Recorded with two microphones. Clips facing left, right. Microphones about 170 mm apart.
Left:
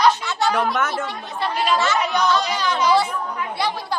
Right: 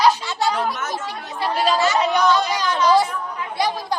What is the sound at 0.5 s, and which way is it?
Speech, 65° left (ahead or behind).